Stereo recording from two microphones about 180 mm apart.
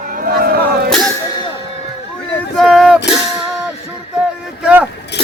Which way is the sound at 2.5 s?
Centre (ahead or behind).